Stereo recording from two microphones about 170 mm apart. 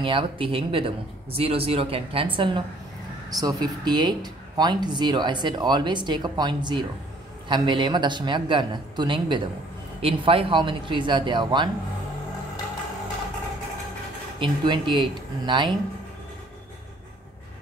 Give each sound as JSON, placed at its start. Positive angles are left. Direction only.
{"t": 0.0, "sound": "speech", "side_deg": -30}
{"t": 14.4, "sound": "speech", "side_deg": -30}